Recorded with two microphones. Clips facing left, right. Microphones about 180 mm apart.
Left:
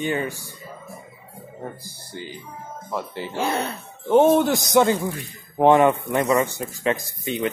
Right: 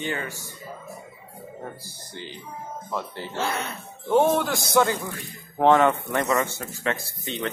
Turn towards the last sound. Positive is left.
turn(degrees=10)  # may be behind; listen again after turning